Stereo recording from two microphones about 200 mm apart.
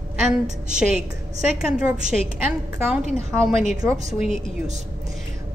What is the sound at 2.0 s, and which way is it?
Speech, 35° right (ahead or behind).